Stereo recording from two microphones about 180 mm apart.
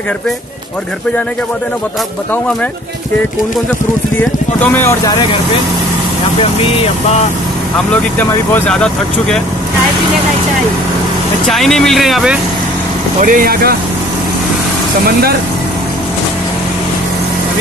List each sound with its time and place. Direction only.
4.2 s speech: 10° left (ahead or behind)
7.9 s speech: 10° left (ahead or behind)
11.4 s speech: centre (ahead or behind)
13.2 s speech: 50° right (ahead or behind)